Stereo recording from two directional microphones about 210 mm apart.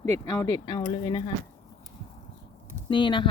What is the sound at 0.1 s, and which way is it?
Speech, 15° left (ahead or behind).